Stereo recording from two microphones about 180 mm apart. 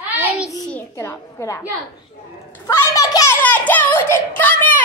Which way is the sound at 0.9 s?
15° left (ahead or behind).